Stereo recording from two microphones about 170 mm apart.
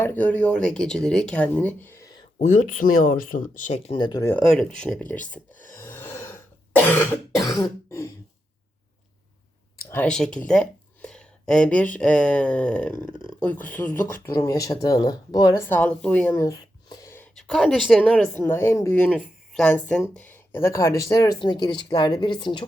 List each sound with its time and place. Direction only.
0.0 s speech: 10° left (ahead or behind)
2.4 s speech: 50° left (ahead or behind)
3.9 s speech: 25° left (ahead or behind)
4.4 s speech: 5° left (ahead or behind)
5.7 s cough: 15° left (ahead or behind)
9.9 s speech: 5° left (ahead or behind); by 15.6 s 20° left (ahead or behind)
15.7 s speech: 10° left (ahead or behind)
17.3 s a woman's voice: centre (ahead or behind)
19.1 s a sound: 5° right (ahead or behind)
19.6 s speech: 5° left (ahead or behind); by 22.6 s 25° left (ahead or behind)